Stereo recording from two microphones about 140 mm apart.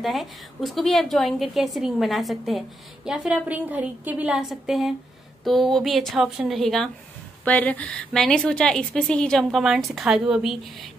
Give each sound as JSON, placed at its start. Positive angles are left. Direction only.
{"t": 0.0, "sound": "a woman's voice", "side_deg": 0}